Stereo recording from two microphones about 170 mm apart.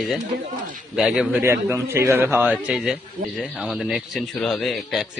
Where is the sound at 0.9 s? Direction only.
5° right (ahead or behind).